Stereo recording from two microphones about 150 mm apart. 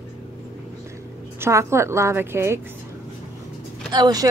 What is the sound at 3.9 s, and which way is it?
Speech, 30° right (ahead or behind).